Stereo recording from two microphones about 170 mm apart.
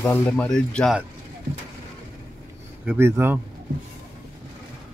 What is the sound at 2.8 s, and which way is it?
Speech, 10° right (ahead or behind).